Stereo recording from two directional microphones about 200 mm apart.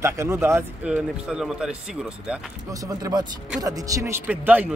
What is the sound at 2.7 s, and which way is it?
Speech, 15° right (ahead or behind).